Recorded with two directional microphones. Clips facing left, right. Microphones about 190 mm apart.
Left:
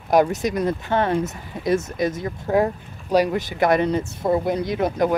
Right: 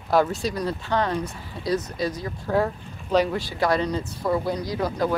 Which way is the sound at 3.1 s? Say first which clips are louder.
Left 3 dB; 10° left (ahead or behind).